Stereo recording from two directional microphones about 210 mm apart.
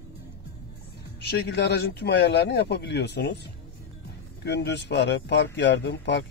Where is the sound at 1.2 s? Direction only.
50° left (ahead or behind).